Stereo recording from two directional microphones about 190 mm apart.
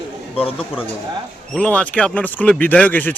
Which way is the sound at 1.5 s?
5° left (ahead or behind).